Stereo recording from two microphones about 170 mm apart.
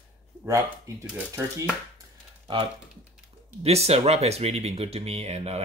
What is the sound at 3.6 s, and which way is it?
Speech, 40° right (ahead or behind).